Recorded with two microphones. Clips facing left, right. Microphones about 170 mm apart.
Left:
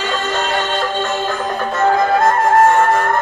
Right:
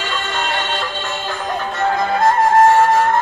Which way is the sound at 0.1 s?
45° left (ahead or behind).